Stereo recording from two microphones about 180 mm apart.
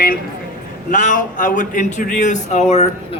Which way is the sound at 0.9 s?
45° left (ahead or behind).